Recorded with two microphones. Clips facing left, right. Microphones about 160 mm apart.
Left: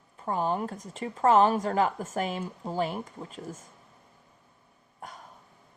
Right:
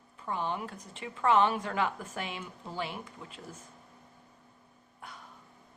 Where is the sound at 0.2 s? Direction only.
40° left (ahead or behind).